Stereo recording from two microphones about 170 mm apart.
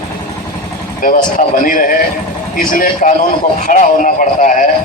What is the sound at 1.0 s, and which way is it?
A man's voice, 50° left (ahead or behind).